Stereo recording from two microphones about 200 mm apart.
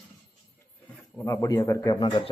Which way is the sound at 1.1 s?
15° left (ahead or behind).